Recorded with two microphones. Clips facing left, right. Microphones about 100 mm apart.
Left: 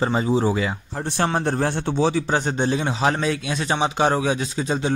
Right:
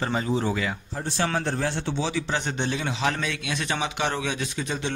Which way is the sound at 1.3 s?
45° left (ahead or behind).